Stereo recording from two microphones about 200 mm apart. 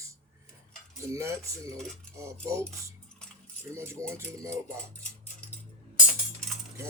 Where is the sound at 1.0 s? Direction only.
15° right (ahead or behind).